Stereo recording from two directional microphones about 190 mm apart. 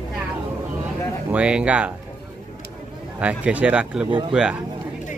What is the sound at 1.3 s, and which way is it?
Speech, 5° right (ahead or behind).